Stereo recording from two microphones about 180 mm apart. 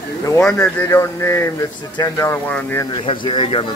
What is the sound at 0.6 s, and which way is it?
Speech, 15° left (ahead or behind).